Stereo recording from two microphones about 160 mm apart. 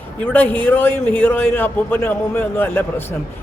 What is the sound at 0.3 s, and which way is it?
A man's voice, 10° left (ahead or behind).